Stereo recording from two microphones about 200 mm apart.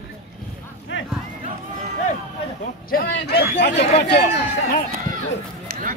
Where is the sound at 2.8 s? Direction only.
50° left (ahead or behind).